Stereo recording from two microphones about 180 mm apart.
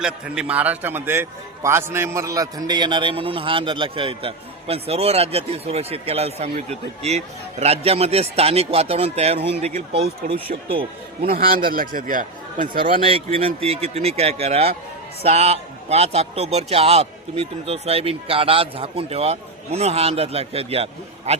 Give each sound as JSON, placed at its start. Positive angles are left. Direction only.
{"t": 0.0, "sound": "a man's voice", "side_deg": -5}
{"t": 11.3, "sound": "a man's voice", "side_deg": -55}
{"t": 12.7, "sound": "a man's voice", "side_deg": -30}